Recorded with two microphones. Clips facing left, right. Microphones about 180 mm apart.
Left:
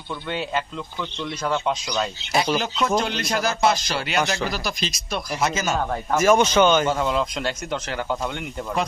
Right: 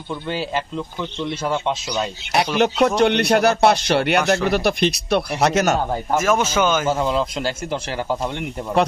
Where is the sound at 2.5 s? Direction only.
65° right (ahead or behind).